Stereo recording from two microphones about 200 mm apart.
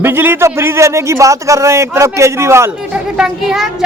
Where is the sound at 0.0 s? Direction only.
10° right (ahead or behind).